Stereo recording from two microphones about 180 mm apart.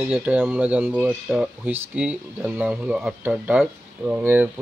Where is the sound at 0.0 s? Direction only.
10° right (ahead or behind).